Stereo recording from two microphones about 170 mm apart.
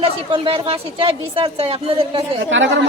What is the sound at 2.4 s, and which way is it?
Speech, 90° right.